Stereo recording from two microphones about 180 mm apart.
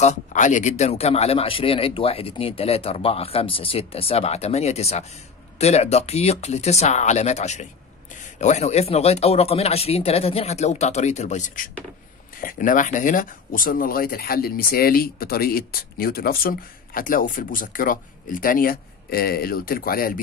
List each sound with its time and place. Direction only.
0.0 s speech: 40° left (ahead or behind)